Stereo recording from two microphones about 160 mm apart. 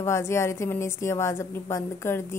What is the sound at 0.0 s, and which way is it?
A woman's voice, 15° left (ahead or behind).